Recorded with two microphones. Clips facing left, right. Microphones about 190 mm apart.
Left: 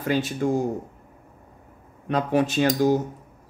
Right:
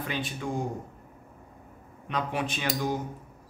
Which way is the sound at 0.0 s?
45° left (ahead or behind).